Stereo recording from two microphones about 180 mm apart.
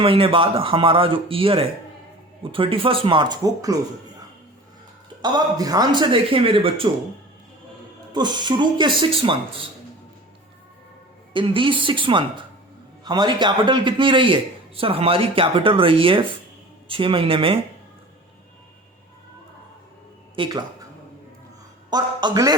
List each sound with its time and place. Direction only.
0.0 s speech: 30° right (ahead or behind)
5.2 s speech: 20° right (ahead or behind)
8.1 s speech: 25° right (ahead or behind)
11.3 s speech: 30° right (ahead or behind)
20.3 s speech: 25° right (ahead or behind)
21.8 s speech: 25° right (ahead or behind)